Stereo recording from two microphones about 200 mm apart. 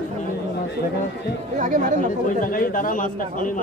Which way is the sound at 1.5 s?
40° right (ahead or behind).